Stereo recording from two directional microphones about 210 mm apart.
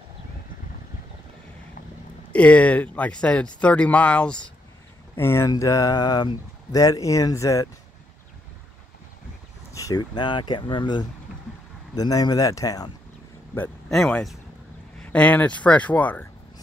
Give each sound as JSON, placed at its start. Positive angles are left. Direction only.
{"t": 2.3, "sound": "speech", "side_deg": 5}
{"t": 9.7, "sound": "speech", "side_deg": 15}
{"t": 13.6, "sound": "speech", "side_deg": 5}